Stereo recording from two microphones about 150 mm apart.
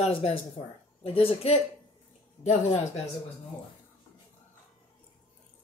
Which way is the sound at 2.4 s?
50° left (ahead or behind).